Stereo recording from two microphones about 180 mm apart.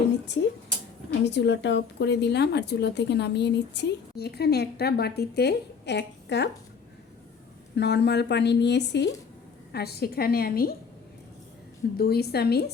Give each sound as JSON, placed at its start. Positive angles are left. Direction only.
{"t": 1.2, "sound": "a woman's voice", "side_deg": 70}
{"t": 7.8, "sound": "a woman's voice", "side_deg": 70}
{"t": 9.7, "sound": "a woman's voice", "side_deg": 60}
{"t": 11.9, "sound": "a woman's voice", "side_deg": 60}